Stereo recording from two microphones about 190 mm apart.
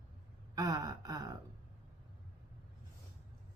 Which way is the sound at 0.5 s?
20° right (ahead or behind).